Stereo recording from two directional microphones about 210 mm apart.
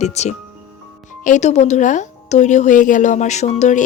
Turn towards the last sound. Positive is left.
turn(degrees=35)  # may be behind; listen again after turning